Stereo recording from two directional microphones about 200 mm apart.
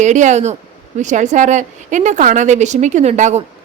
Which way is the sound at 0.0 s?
35° right (ahead or behind).